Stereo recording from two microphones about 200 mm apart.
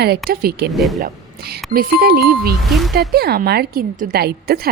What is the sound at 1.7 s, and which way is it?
Speech, 50° right (ahead or behind).